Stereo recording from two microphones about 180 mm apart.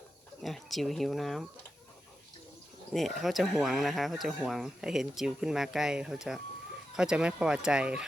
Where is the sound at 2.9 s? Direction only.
Centre (ahead or behind).